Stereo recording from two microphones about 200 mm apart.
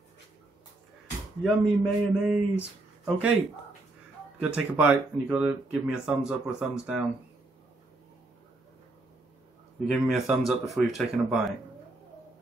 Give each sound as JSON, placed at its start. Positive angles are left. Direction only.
{"t": 1.4, "sound": "speech", "side_deg": -5}
{"t": 4.4, "sound": "speech", "side_deg": -5}
{"t": 9.8, "sound": "speech", "side_deg": 0}